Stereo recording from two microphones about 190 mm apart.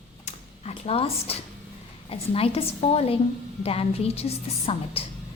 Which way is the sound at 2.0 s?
30° left (ahead or behind).